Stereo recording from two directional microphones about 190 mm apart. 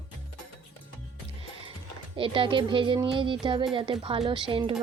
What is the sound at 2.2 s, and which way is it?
Speech, 25° right (ahead or behind).